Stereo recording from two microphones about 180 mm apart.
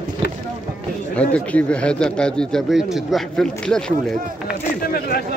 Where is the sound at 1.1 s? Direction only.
5° left (ahead or behind).